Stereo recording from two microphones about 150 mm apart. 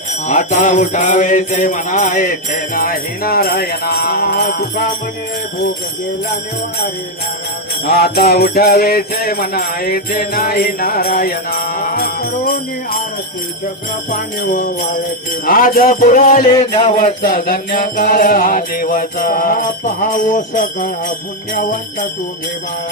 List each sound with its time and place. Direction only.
0.1 s jingle bell: 60° left (ahead or behind); by 4.9 s 90° left
7.9 s jingle bell: 90° left
14.1 s music: 70° left (ahead or behind)
16.7 s music: 45° left (ahead or behind)
17.2 s music: 70° left (ahead or behind)